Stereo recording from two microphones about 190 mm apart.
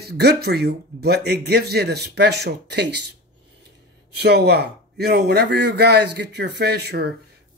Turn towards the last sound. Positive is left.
turn(degrees=-60)  # may be behind; listen again after turning